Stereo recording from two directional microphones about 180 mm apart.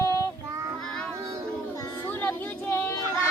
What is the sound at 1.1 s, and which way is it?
Child singing, 15° right (ahead or behind).